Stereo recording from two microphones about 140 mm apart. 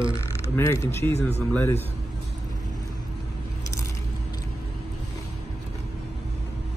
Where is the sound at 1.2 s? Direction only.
15° left (ahead or behind).